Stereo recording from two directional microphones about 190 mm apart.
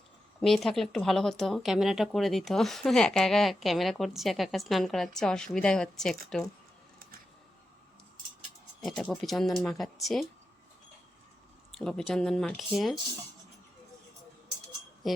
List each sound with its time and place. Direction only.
0.3 s speech: centre (ahead or behind)
8.8 s speech: centre (ahead or behind)
11.8 s speech: centre (ahead or behind)
15.0 s a sound: centre (ahead or behind)